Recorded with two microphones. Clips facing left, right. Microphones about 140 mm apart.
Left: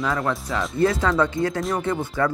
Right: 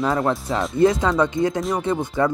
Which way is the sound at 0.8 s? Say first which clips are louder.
Right 3 dB; 20° right (ahead or behind).